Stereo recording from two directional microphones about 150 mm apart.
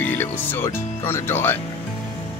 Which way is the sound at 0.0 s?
10° left (ahead or behind).